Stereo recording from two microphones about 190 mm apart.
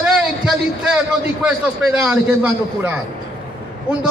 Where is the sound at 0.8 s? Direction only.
5° right (ahead or behind).